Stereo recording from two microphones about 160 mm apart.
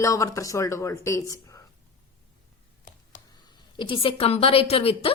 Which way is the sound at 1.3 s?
20° left (ahead or behind).